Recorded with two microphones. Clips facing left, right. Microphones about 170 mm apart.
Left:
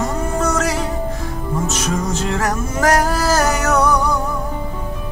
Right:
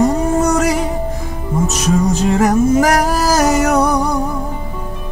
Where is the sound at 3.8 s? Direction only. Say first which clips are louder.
Right 2 dB; 30° right (ahead or behind).